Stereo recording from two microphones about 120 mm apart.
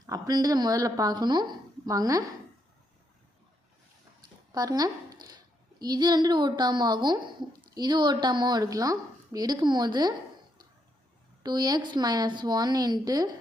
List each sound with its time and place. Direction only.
0.0 s a woman's voice: 35° right (ahead or behind)
4.5 s a woman's voice: 35° right (ahead or behind)
11.4 s a woman's voice: 35° right (ahead or behind)